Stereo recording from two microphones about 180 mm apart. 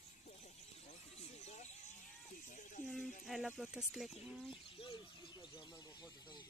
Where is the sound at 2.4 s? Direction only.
45° left (ahead or behind).